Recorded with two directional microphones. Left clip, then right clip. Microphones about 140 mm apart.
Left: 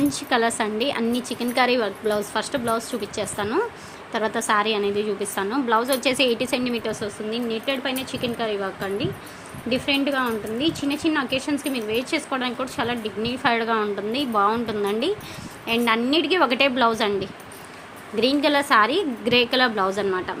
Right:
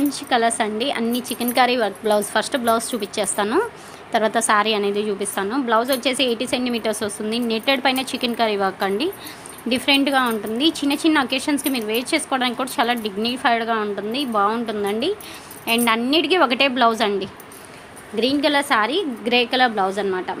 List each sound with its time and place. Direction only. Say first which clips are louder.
0.1 s a woman's voice: right 3 dB; 5° right (ahead or behind)
6.8 s speech: right 4 dB; 35° right (ahead or behind); by 15.1 s 10° right (ahead or behind)
15.6 s a woman's voice: right 2 dB; 20° right (ahead or behind); by 20.3 s 5° right (ahead or behind)